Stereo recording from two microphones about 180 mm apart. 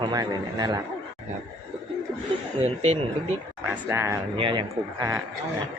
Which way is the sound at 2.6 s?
35° right (ahead or behind).